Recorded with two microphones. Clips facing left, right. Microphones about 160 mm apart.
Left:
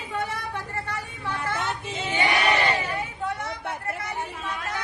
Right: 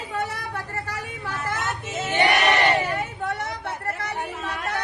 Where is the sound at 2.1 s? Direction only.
70° right (ahead or behind).